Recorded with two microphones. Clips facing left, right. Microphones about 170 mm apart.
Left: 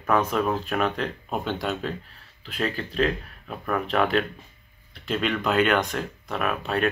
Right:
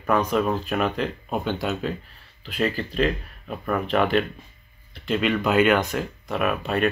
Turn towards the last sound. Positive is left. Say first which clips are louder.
# right 2 dB
turn(degrees=0)  # may be behind; listen again after turning